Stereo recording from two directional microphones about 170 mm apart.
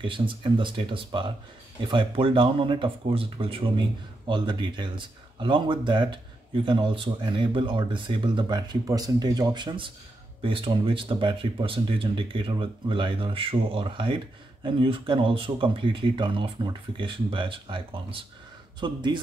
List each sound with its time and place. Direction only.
0.0 s speech: 30° right (ahead or behind)